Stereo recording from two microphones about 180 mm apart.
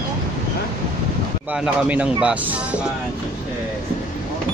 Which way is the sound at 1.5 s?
5° right (ahead or behind).